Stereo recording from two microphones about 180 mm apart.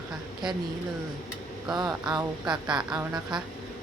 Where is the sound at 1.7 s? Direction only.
20° right (ahead or behind).